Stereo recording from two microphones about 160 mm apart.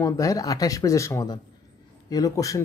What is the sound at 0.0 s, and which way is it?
Speech, 20° left (ahead or behind).